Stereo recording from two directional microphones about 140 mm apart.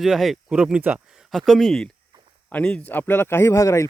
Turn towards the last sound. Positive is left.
turn(degrees=20)  # may be behind; listen again after turning